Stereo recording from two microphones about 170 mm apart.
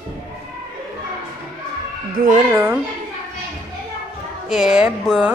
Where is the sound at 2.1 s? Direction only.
50° right (ahead or behind).